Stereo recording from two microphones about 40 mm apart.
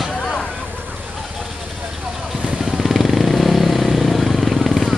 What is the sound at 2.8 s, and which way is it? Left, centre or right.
Vehicle, centre.